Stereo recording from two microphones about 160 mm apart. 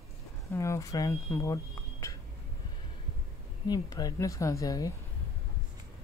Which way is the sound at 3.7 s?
25° left (ahead or behind).